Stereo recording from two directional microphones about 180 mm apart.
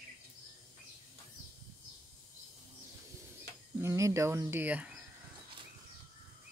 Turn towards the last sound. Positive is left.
turn(degrees=-10)  # may be behind; listen again after turning